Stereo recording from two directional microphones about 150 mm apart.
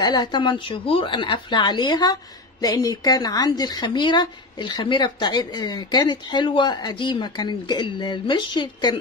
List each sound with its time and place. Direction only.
0.0 s speech: 30° left (ahead or behind)